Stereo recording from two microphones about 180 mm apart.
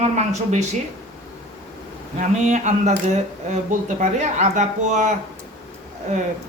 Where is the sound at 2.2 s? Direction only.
40° right (ahead or behind).